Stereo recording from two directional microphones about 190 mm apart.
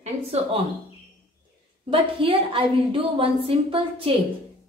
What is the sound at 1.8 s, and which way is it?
A woman's voice, 25° right (ahead or behind).